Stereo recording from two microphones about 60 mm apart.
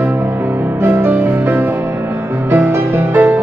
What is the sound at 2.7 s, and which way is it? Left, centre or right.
Music, right.